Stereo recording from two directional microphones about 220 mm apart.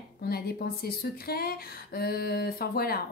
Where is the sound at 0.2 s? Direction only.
45° left (ahead or behind).